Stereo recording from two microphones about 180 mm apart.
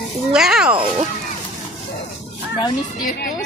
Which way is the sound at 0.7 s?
30° right (ahead or behind).